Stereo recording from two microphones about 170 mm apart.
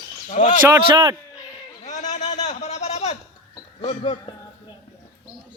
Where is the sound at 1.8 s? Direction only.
45° left (ahead or behind).